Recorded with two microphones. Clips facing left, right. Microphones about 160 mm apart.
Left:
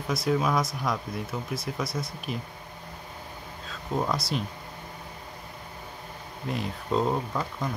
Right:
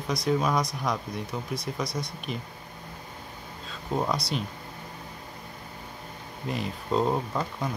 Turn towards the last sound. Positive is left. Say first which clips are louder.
# even
turn(degrees=-5)  # may be behind; listen again after turning